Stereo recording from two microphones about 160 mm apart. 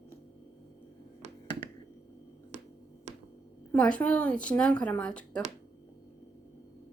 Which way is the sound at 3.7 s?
5° left (ahead or behind).